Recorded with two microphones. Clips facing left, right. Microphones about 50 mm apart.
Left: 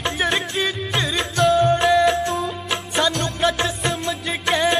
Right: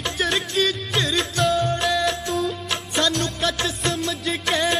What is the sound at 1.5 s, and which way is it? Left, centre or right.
Music, centre.